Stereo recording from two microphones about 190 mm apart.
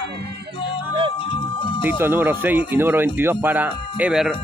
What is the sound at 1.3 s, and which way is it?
Music, 25° left (ahead or behind).